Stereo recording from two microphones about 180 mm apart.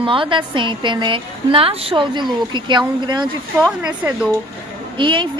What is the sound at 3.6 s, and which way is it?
Speech, 5° right (ahead or behind).